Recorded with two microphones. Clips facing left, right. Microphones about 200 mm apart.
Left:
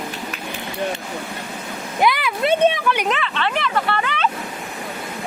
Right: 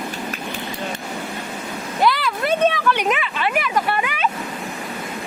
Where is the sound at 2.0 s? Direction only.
15° left (ahead or behind).